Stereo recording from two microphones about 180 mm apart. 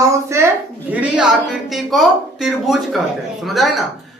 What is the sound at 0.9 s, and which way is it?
Speech, 5° right (ahead or behind).